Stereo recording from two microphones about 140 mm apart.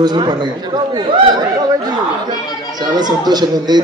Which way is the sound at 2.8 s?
30° right (ahead or behind).